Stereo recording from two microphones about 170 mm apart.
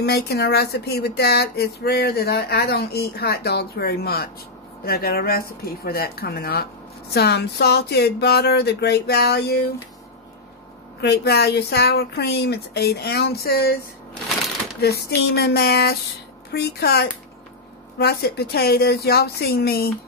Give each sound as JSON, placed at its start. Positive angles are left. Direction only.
{"t": 0.0, "sound": "speech", "side_deg": 70}
{"t": 11.0, "sound": "speech", "side_deg": 75}
{"t": 14.8, "sound": "speech", "side_deg": 70}